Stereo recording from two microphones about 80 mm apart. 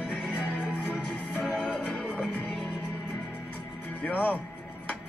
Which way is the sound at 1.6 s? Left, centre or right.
Centre.